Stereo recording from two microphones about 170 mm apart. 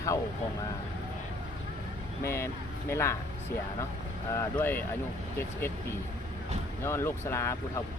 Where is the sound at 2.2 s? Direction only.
15° left (ahead or behind).